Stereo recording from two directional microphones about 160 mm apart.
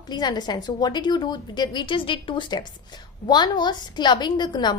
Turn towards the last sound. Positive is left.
turn(degrees=25)  # may be behind; listen again after turning